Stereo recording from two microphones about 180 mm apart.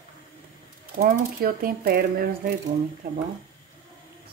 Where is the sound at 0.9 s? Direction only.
55° right (ahead or behind).